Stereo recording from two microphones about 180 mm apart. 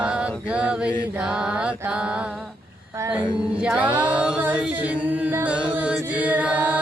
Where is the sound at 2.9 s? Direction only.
10° right (ahead or behind).